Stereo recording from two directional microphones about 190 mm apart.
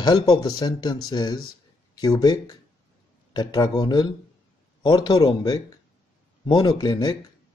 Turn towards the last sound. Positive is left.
turn(degrees=20)  # may be behind; listen again after turning